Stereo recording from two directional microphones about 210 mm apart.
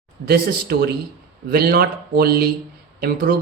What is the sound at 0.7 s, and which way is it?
A woman's voice, 45° right (ahead or behind).